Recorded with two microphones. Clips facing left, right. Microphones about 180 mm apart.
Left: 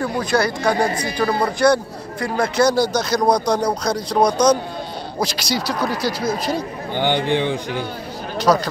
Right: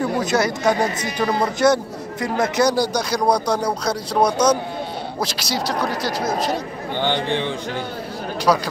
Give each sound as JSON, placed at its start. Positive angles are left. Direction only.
{"t": 0.0, "sound": "a man's voice", "side_deg": -20}
{"t": 7.2, "sound": "a man's voice", "side_deg": 15}
{"t": 8.5, "sound": "a man's voice", "side_deg": -10}